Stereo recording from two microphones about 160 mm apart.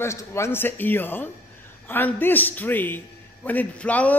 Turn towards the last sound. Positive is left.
turn(degrees=10)  # may be behind; listen again after turning